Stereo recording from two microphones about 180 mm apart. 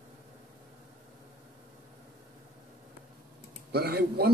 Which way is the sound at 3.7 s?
60° right (ahead or behind).